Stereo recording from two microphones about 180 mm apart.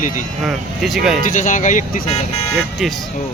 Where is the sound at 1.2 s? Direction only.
45° left (ahead or behind).